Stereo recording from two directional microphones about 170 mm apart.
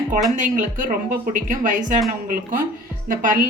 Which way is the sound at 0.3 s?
50° right (ahead or behind).